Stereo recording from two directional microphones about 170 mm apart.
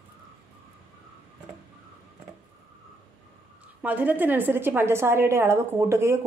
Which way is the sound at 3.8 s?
10° right (ahead or behind).